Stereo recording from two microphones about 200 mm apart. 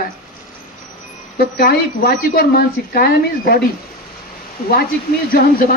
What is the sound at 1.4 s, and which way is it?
A woman's voice, 50° left (ahead or behind).